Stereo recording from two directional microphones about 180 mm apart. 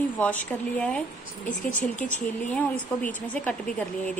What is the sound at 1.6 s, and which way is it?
Speech, 45° left (ahead or behind).